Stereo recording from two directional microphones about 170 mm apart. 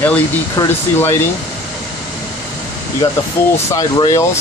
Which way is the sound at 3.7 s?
20° left (ahead or behind).